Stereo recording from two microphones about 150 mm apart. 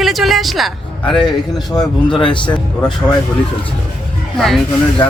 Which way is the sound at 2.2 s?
30° left (ahead or behind).